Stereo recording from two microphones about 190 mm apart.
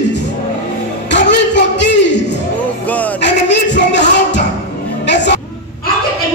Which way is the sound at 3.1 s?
65° left (ahead or behind).